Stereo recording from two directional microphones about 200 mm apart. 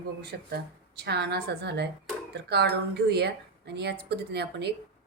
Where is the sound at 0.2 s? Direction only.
55° right (ahead or behind).